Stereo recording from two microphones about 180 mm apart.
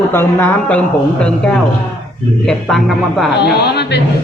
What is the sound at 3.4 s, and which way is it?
Speech, 65° left (ahead or behind).